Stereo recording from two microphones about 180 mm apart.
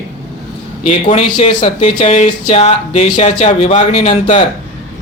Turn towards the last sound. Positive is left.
turn(degrees=40)  # may be behind; listen again after turning